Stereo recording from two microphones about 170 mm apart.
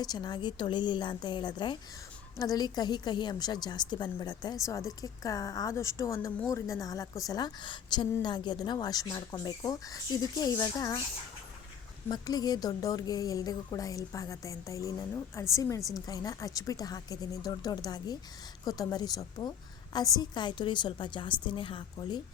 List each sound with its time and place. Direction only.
0.0 s a woman's voice: 25° left (ahead or behind)
12.0 s a woman's voice: 25° left (ahead or behind)